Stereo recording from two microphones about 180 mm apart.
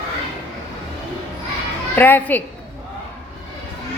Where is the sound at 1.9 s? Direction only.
10° left (ahead or behind).